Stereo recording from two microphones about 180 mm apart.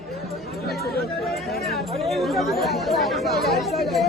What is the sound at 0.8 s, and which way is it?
Speech, 60° left (ahead or behind).